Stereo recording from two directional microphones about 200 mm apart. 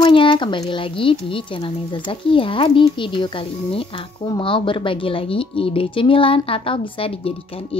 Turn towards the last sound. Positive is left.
turn(degrees=25)  # may be behind; listen again after turning